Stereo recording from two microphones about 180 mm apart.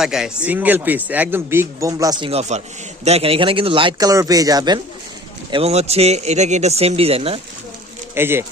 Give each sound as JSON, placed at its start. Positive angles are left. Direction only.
{"t": 0.0, "sound": "speech", "side_deg": -5}
{"t": 2.3, "sound": "speech", "side_deg": -40}
{"t": 5.5, "sound": "speech", "side_deg": -30}
{"t": 8.1, "sound": "speech", "side_deg": -15}